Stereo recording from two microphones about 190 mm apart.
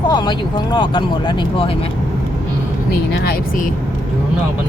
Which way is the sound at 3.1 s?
55° left (ahead or behind).